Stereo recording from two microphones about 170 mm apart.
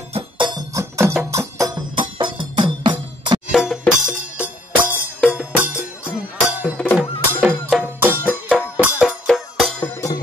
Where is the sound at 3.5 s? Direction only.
Centre (ahead or behind).